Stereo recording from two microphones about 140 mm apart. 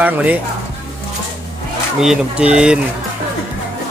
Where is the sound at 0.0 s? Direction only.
10° right (ahead or behind).